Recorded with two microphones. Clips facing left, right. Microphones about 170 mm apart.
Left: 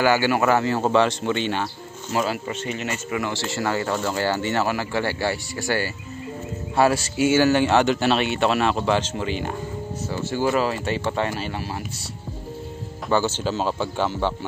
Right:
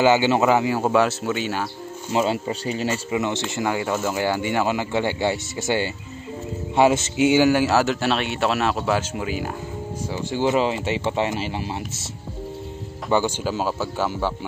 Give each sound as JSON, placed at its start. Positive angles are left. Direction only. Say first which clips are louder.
{"t": 0.0, "sound": "speech", "louder": "right 2 dB", "side_deg": -20}
{"t": 2.1, "sound": "speech", "louder": "right 3 dB", "side_deg": -25}
{"t": 3.1, "sound": "speech", "louder": "right 2 dB", "side_deg": -20}
{"t": 10.1, "sound": "speech", "louder": "right 1 dB", "side_deg": -20}
{"t": 13.1, "sound": "speech", "louder": "right 1 dB", "side_deg": -10}